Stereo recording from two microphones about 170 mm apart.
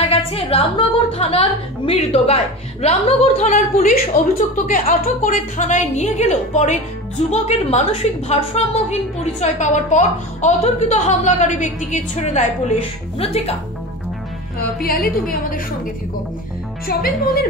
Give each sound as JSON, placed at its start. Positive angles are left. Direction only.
{"t": 0.0, "sound": "a woman's voice", "side_deg": 35}
{"t": 14.8, "sound": "a woman's voice", "side_deg": 60}
{"t": 16.8, "sound": "a woman's voice", "side_deg": 60}